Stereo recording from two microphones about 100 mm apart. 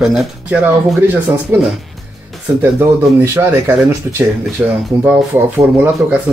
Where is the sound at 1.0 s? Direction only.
20° right (ahead or behind).